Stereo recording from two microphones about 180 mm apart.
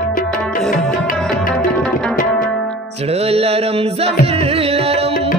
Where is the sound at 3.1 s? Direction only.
35° right (ahead or behind).